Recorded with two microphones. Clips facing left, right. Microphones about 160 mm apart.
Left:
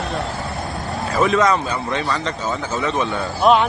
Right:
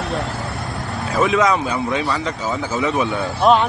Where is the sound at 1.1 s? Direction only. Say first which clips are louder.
Even; centre (ahead or behind).